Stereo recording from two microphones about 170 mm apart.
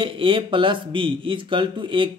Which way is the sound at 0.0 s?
30° right (ahead or behind).